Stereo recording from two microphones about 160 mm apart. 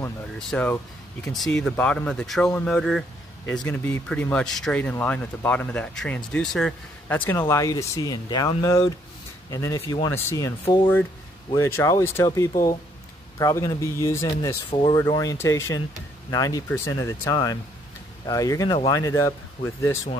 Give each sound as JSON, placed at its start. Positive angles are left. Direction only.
{"t": 0.4, "sound": "speech", "side_deg": 5}
{"t": 10.6, "sound": "speech", "side_deg": 35}
{"t": 11.5, "sound": "speech", "side_deg": 20}
{"t": 13.4, "sound": "speech", "side_deg": 20}
{"t": 14.4, "sound": "speech", "side_deg": 30}
{"t": 15.0, "sound": "speech", "side_deg": 20}